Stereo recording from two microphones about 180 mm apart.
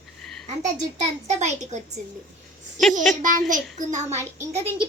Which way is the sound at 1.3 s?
40° right (ahead or behind).